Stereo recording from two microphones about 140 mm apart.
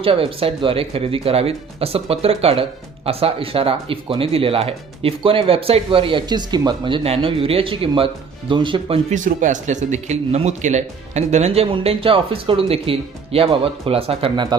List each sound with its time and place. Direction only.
0.0 s speech: 40° right (ahead or behind)
9.0 s speech: 65° right (ahead or behind); by 14.4 s 40° right (ahead or behind)